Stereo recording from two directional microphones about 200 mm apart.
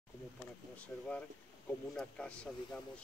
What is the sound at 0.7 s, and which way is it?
Speech, 5° left (ahead or behind).